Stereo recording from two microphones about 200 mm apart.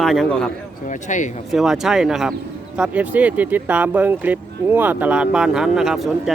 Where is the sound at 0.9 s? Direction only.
40° left (ahead or behind).